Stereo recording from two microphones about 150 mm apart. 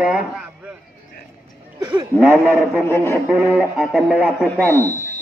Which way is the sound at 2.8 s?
15° left (ahead or behind).